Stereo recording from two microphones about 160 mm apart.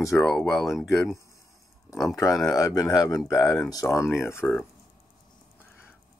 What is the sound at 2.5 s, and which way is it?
Speech, 20° left (ahead or behind).